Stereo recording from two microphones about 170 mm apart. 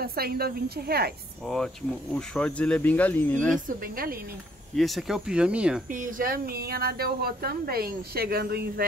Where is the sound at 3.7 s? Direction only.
55° right (ahead or behind).